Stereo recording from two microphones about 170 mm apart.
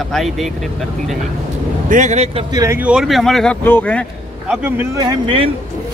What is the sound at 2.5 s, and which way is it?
Speech, 20° right (ahead or behind).